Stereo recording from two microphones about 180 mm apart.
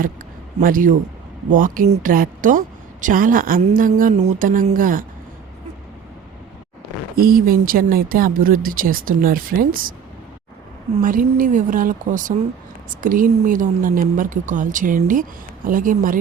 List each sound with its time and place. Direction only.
0.6 s speech: 50° right (ahead or behind)
7.2 s speech: 55° right (ahead or behind)
11.0 s speech: 50° right (ahead or behind)